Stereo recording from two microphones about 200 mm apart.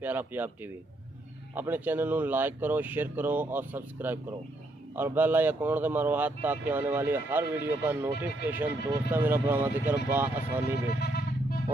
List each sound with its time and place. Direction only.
0.0 s speech: 10° right (ahead or behind)
10.9 s music: 50° left (ahead or behind)